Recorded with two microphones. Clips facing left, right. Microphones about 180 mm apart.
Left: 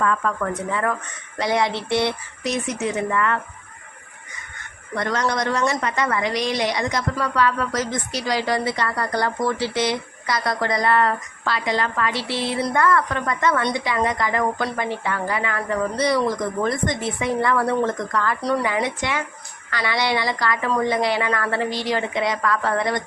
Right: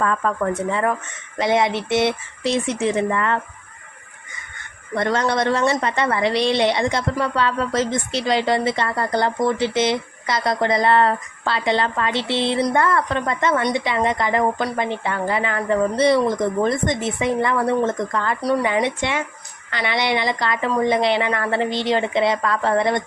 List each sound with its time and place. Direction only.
0.0 s a woman's voice: 35° right (ahead or behind)
4.9 s a woman's voice: 25° right (ahead or behind)